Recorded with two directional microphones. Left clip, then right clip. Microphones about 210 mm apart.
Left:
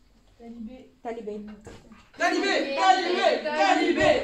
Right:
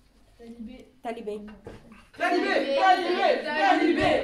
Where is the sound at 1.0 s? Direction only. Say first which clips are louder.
Right 1 dB; 30° right (ahead or behind).